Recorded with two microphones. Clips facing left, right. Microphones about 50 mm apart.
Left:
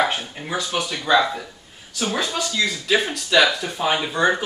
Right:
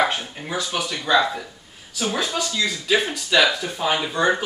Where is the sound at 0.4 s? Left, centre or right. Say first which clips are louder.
Left 2 dB; centre.